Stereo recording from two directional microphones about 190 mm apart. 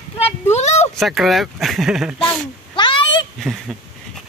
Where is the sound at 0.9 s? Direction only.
Centre (ahead or behind).